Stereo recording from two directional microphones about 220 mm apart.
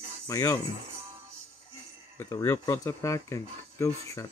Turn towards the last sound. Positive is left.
turn(degrees=15)  # may be behind; listen again after turning